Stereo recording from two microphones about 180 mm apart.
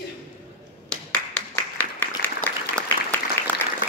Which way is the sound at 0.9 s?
5° left (ahead or behind).